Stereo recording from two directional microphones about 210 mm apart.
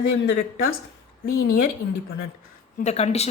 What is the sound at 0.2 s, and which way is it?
Speech, 45° left (ahead or behind).